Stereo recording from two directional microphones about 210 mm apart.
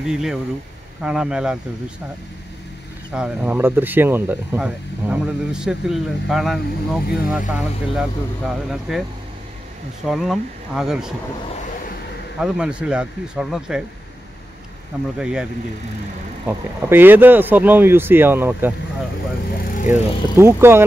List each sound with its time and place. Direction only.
0.0 s speech: centre (ahead or behind)
3.1 s speech: 5° right (ahead or behind)
10.0 s speech: centre (ahead or behind)
12.4 s speech: 5° right (ahead or behind)
15.1 s speech: 5° right (ahead or behind)
16.4 s speech: 10° right (ahead or behind)
19.6 s music: 40° left (ahead or behind)
19.9 s speech: 10° right (ahead or behind)